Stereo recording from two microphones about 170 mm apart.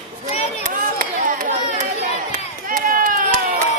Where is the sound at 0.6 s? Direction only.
50° right (ahead or behind).